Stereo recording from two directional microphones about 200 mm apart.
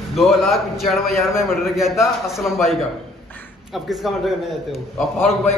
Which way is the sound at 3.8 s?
Centre (ahead or behind).